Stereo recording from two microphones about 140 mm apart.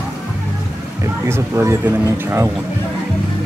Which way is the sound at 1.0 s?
20° right (ahead or behind).